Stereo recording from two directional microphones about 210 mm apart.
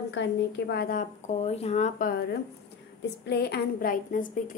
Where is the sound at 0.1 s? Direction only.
55° left (ahead or behind).